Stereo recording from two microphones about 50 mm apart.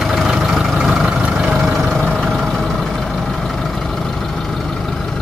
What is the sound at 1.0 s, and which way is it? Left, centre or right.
Vehicle, right.